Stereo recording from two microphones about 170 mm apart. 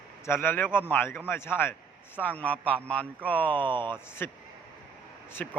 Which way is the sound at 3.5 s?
30° right (ahead or behind).